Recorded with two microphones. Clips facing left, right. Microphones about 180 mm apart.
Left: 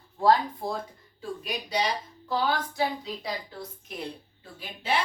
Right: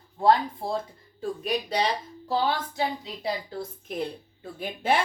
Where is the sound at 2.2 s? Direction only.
30° right (ahead or behind).